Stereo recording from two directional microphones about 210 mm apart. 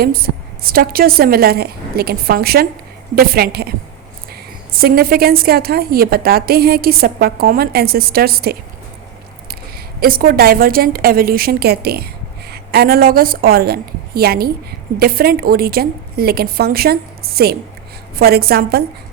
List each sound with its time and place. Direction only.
0.0 s a woman's voice: 45° right (ahead or behind)